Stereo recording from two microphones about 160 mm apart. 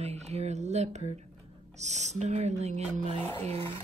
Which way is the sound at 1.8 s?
45° right (ahead or behind).